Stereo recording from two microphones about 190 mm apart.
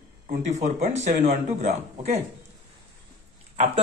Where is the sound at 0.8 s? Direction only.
45° right (ahead or behind).